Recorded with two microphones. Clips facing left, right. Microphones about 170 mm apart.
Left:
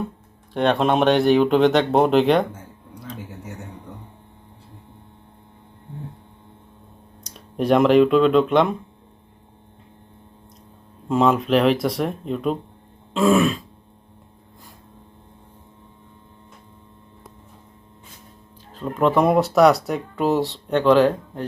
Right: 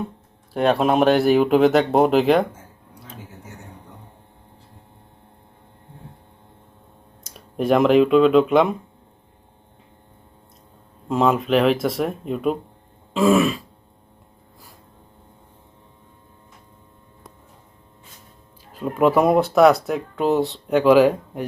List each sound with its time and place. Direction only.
0.5 s speech: 5° right (ahead or behind)
7.3 s speech: centre (ahead or behind)
11.1 s speech: centre (ahead or behind)
18.7 s speech: 10° right (ahead or behind)